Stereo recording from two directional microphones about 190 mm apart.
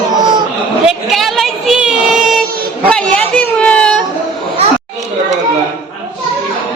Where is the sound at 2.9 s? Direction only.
5° left (ahead or behind).